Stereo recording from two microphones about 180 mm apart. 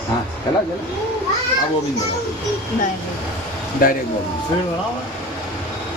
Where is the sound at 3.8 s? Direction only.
50° left (ahead or behind).